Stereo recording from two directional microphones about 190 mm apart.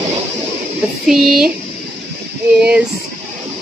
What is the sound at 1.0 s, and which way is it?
Speech, centre (ahead or behind).